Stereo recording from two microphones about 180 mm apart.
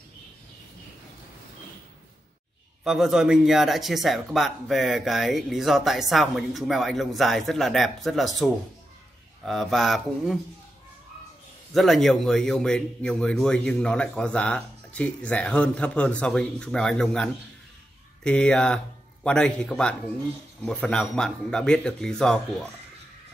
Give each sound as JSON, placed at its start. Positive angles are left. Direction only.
{"t": 2.8, "sound": "a man's voice", "side_deg": 0}
{"t": 11.7, "sound": "a man's voice", "side_deg": 0}